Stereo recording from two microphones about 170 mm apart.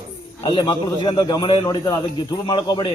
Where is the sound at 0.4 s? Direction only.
25° left (ahead or behind).